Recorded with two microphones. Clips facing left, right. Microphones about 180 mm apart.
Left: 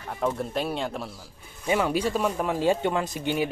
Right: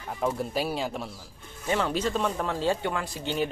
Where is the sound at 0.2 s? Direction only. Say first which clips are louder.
Left 1 dB; 5° right (ahead or behind).